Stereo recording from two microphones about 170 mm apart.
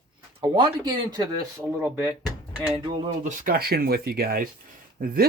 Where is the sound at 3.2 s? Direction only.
50° right (ahead or behind).